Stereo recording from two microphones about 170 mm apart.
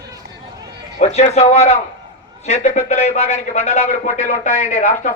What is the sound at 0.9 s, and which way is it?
A man's voice, 45° left (ahead or behind).